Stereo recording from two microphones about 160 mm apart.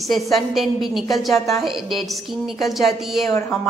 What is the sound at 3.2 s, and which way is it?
Speech, 15° left (ahead or behind).